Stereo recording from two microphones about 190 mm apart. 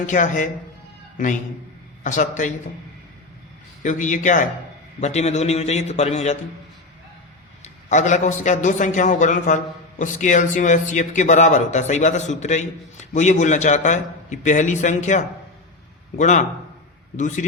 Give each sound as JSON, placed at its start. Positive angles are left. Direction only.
{"t": 0.0, "sound": "speech", "side_deg": 40}
{"t": 2.0, "sound": "speech", "side_deg": 40}
{"t": 3.8, "sound": "speech", "side_deg": 40}
{"t": 7.6, "sound": "speech", "side_deg": 40}